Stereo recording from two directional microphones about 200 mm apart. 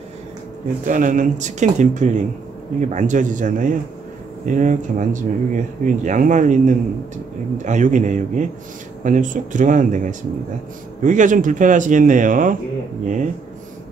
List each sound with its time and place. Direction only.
0.8 s speech: 40° right (ahead or behind)